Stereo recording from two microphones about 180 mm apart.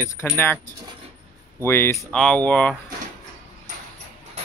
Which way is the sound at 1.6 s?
10° left (ahead or behind).